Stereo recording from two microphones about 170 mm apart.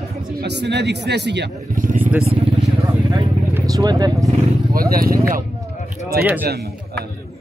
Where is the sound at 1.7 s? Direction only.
50° right (ahead or behind).